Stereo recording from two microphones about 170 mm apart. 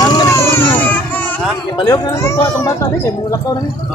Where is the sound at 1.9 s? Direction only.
20° left (ahead or behind).